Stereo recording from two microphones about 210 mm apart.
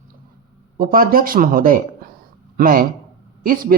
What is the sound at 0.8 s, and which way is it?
Speech, 45° right (ahead or behind).